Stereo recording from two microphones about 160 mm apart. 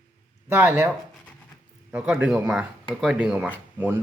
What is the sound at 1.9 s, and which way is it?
Speech, 10° right (ahead or behind).